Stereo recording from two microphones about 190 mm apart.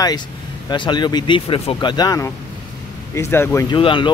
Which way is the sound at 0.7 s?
25° left (ahead or behind).